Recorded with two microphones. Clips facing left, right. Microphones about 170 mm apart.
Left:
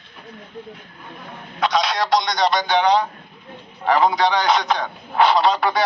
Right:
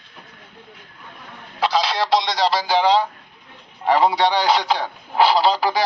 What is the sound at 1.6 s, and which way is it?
Speech, 30° right (ahead or behind).